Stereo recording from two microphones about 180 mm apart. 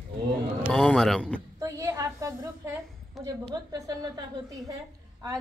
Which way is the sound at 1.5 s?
15° right (ahead or behind).